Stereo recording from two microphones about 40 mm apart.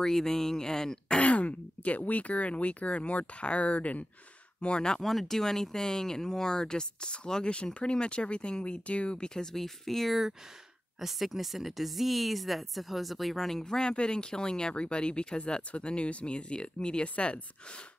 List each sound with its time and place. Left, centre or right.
0.0 s speech: centre
1.2 s speech: left
5.0 s speech: centre
11.0 s speech: centre
13.7 s speech: left